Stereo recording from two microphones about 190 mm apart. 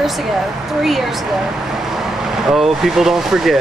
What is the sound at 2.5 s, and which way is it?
Speech, centre (ahead or behind).